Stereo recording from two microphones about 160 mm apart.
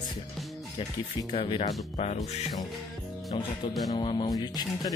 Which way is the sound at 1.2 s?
30° left (ahead or behind).